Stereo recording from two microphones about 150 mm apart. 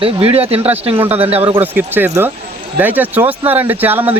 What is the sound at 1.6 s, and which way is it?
Speech, 15° right (ahead or behind).